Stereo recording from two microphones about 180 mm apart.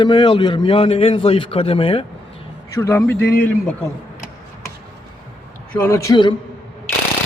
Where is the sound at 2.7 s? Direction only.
15° left (ahead or behind).